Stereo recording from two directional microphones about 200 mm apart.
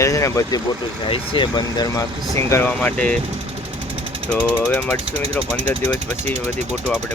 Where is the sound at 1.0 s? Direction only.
25° left (ahead or behind); by 3.1 s 5° left (ahead or behind).